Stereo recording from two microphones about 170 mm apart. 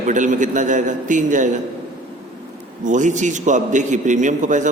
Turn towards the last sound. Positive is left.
turn(degrees=-45)  # may be behind; listen again after turning